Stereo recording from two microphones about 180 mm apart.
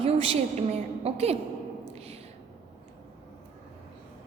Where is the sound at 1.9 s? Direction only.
35° right (ahead or behind).